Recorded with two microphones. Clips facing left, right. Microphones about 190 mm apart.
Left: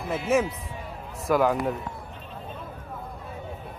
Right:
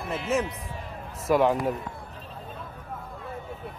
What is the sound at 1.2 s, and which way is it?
Speech, centre (ahead or behind).